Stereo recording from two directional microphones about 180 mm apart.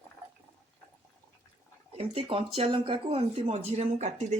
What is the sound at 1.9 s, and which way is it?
Speech, 30° right (ahead or behind).